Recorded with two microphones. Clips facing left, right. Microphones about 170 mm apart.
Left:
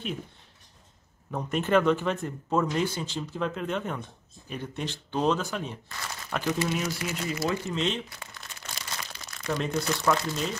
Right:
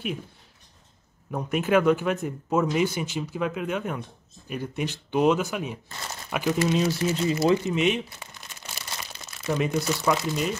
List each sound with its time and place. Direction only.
1.3 s speech: 5° right (ahead or behind)
6.7 s speech: 30° right (ahead or behind)
7.7 s crumpling: 15° right (ahead or behind)
9.5 s speech: 10° right (ahead or behind)